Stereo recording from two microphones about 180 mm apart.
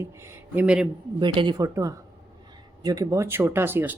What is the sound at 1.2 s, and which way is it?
Speech, 25° right (ahead or behind).